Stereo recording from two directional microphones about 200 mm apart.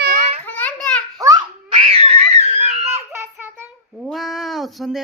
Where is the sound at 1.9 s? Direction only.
30° right (ahead or behind).